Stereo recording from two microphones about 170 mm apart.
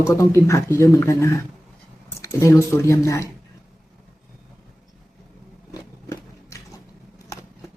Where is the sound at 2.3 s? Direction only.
15° left (ahead or behind).